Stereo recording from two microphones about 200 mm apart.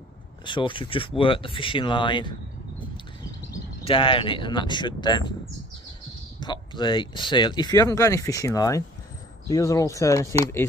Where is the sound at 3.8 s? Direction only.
25° left (ahead or behind).